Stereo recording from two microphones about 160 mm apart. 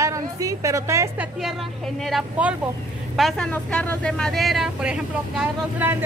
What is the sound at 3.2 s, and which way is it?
A woman's voice, centre (ahead or behind).